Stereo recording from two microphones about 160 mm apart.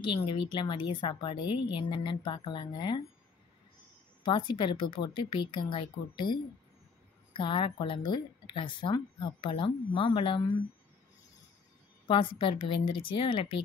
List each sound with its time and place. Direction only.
0.0 s a woman's voice: 30° left (ahead or behind)
4.2 s a woman's voice: 30° left (ahead or behind)
12.1 s a woman's voice: 30° left (ahead or behind)